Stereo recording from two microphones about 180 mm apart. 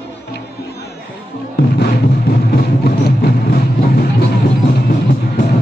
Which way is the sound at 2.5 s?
60° left (ahead or behind).